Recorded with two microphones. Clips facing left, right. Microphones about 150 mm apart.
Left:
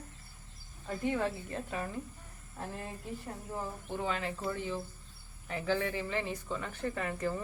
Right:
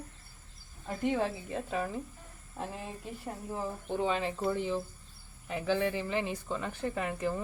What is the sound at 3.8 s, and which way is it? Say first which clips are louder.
A woman's voice: right 5 dB; 25° right (ahead or behind).